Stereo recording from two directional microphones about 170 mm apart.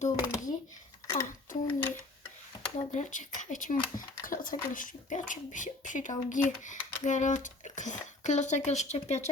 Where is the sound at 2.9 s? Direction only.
45° left (ahead or behind).